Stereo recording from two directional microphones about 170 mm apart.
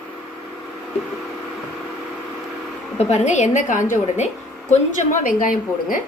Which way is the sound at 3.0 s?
45° left (ahead or behind).